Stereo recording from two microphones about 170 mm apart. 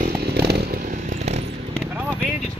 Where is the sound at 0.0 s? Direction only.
70° right (ahead or behind).